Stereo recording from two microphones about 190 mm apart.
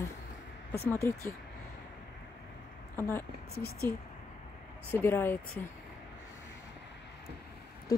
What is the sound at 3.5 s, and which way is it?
Speech, 55° left (ahead or behind).